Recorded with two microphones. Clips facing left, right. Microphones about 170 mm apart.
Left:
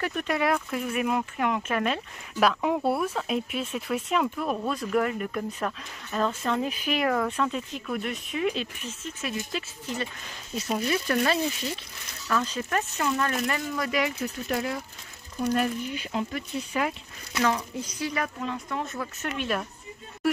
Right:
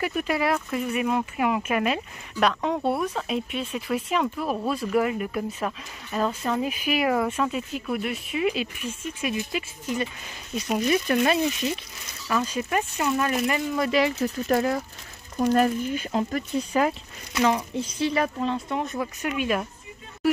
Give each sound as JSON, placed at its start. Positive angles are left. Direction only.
{"t": 0.0, "sound": "speech", "side_deg": -5}
{"t": 2.4, "sound": "speech", "side_deg": 5}
{"t": 13.7, "sound": "speech", "side_deg": -25}
{"t": 14.5, "sound": "speech", "side_deg": -45}
{"t": 17.6, "sound": "speech", "side_deg": -25}
{"t": 18.8, "sound": "speech", "side_deg": -15}